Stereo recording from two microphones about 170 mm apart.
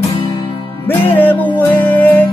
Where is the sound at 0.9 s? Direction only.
10° left (ahead or behind).